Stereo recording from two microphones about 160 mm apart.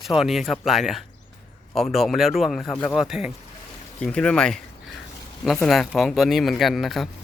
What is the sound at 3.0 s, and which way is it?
Speech, 5° right (ahead or behind).